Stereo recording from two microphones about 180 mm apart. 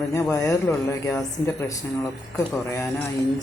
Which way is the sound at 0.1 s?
15° left (ahead or behind).